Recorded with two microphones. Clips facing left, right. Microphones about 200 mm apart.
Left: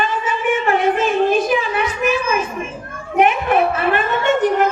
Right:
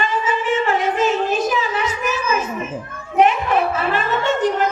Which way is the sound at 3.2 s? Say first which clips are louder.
Left 1 dB; 60° left (ahead or behind).